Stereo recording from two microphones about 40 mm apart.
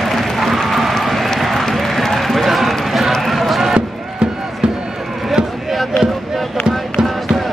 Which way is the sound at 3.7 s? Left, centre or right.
Centre.